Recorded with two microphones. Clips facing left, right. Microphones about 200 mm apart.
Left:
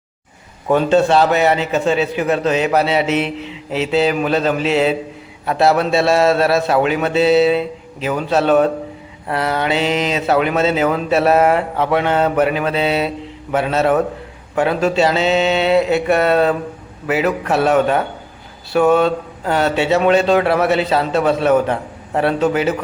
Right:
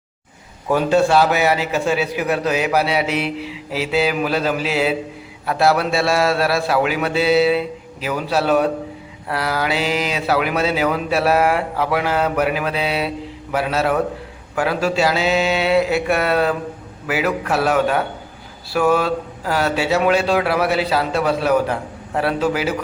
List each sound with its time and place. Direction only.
0.7 s a man's voice: 5° right (ahead or behind)
18.7 s speech: 25° left (ahead or behind)
18.9 s a man's voice: 5° right (ahead or behind)